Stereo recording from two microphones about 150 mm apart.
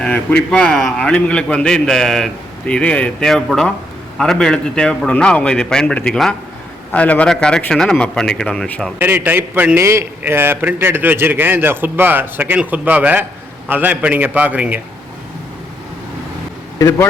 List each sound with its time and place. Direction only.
0.0 s a man's voice: 5° left (ahead or behind)
9.0 s a man's voice: 15° right (ahead or behind)
16.7 s speech: 20° left (ahead or behind)